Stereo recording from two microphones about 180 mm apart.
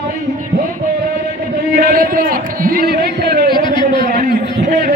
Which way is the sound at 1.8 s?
50° right (ahead or behind).